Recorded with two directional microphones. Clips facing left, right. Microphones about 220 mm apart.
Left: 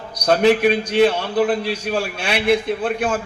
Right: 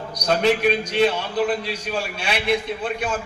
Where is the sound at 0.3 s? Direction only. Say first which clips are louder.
Left 4 dB; 55° left (ahead or behind).